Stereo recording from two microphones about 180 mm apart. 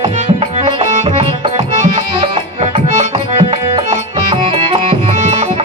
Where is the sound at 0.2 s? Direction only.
40° right (ahead or behind).